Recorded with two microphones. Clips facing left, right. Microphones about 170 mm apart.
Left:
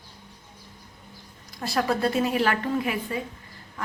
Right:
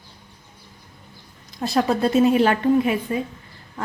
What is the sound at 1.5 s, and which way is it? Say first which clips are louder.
A woman's voice: right 5 dB; 20° right (ahead or behind).